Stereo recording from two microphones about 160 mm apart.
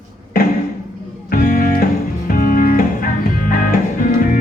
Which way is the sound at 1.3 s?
55° left (ahead or behind).